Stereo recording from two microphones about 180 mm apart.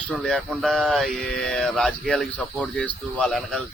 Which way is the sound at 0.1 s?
5° left (ahead or behind).